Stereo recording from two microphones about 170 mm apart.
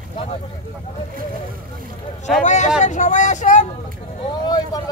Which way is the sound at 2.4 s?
45° left (ahead or behind).